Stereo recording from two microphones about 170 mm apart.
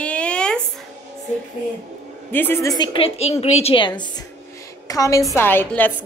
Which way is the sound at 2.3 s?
10° left (ahead or behind).